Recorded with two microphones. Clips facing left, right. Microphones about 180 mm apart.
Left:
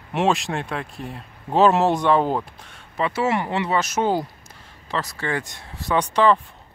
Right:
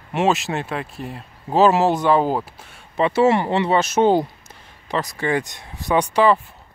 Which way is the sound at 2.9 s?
25° right (ahead or behind).